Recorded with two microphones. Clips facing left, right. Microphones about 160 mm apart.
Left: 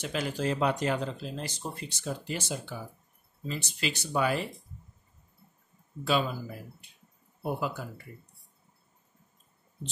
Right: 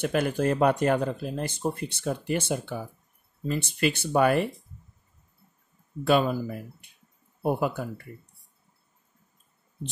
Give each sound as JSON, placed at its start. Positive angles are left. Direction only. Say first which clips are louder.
{"t": 0.0, "sound": "speech", "louder": "right 6 dB", "side_deg": -55}
{"t": 6.0, "sound": "speech", "louder": "right 6 dB", "side_deg": -55}
{"t": 7.4, "sound": "speech", "louder": "right 6 dB", "side_deg": -55}